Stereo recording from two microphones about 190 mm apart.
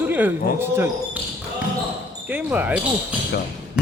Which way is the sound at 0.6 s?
10° right (ahead or behind).